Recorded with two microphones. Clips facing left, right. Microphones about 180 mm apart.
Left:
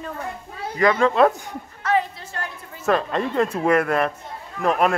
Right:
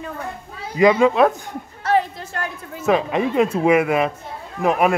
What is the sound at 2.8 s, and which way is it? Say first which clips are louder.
Speech: right 3 dB; 10° right (ahead or behind).